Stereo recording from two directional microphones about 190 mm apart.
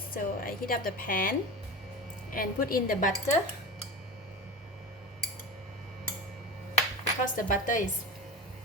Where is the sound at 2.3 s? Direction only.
50° left (ahead or behind).